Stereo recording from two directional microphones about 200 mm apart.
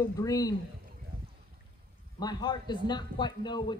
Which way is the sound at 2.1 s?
20° left (ahead or behind).